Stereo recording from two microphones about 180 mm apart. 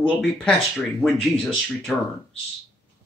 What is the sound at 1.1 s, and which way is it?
Speech, 30° left (ahead or behind).